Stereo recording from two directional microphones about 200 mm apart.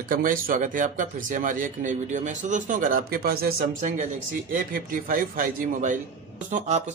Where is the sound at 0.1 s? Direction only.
45° right (ahead or behind).